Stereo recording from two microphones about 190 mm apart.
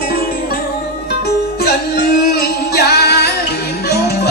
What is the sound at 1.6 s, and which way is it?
Music, 55° left (ahead or behind).